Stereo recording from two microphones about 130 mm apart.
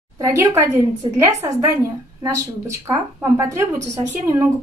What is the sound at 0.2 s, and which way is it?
A woman's voice, 25° right (ahead or behind).